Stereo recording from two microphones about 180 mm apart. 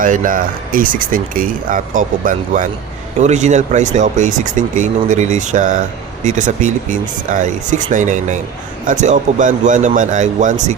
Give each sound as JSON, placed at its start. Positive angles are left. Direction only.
{"t": 0.0, "sound": "speech", "side_deg": -50}